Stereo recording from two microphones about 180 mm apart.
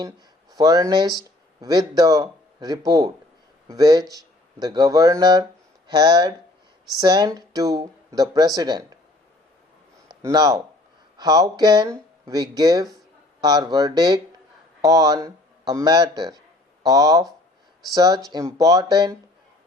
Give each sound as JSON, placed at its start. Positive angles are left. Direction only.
{"t": 0.5, "sound": "speech", "side_deg": -20}
{"t": 10.2, "sound": "speech", "side_deg": -20}